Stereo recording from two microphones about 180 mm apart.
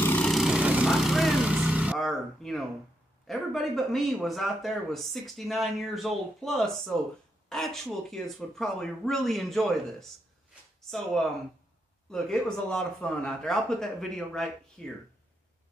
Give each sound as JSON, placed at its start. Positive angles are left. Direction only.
{"t": 0.0, "sound": "vehicle", "side_deg": 5}
{"t": 3.3, "sound": "speech", "side_deg": 0}
{"t": 12.1, "sound": "speech", "side_deg": 5}